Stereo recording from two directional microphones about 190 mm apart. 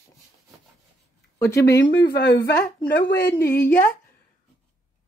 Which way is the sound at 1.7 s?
60° left (ahead or behind).